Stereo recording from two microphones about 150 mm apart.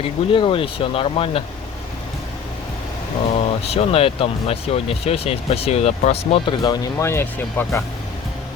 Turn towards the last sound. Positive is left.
turn(degrees=15)  # may be behind; listen again after turning